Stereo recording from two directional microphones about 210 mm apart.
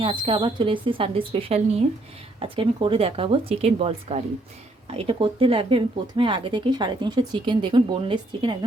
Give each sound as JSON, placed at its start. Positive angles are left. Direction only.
{"t": 0.0, "sound": "speech", "side_deg": -25}